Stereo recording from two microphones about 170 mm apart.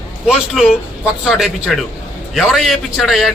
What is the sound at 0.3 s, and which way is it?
Speech, 5° right (ahead or behind).